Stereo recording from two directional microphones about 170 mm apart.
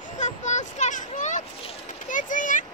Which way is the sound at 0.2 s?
45° left (ahead or behind).